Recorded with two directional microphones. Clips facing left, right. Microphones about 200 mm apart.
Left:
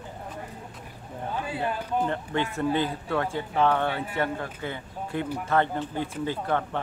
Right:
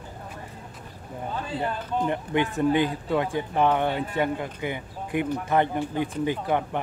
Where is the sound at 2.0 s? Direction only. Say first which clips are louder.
Right 3 dB; 15° right (ahead or behind).